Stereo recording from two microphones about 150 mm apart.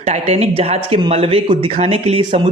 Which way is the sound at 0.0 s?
45° right (ahead or behind).